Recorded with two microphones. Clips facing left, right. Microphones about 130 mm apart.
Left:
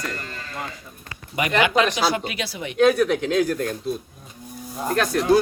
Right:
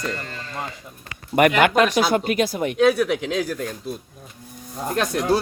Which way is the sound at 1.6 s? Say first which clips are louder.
Right 3 dB; 55° right (ahead or behind).